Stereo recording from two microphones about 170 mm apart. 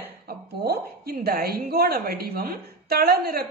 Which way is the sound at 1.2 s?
65° right (ahead or behind).